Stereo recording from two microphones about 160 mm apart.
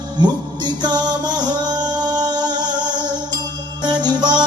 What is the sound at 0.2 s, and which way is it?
Music, 25° right (ahead or behind).